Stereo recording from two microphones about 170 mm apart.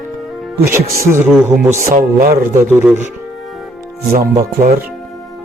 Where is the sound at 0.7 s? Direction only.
15° right (ahead or behind).